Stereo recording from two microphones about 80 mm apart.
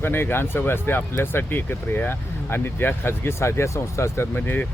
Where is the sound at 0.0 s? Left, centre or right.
Left.